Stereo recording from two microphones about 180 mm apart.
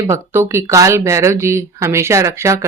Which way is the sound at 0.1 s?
15° right (ahead or behind).